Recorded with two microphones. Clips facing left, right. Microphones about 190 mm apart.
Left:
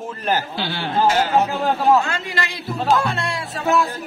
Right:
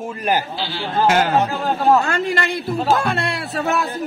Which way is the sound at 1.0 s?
55° right (ahead or behind).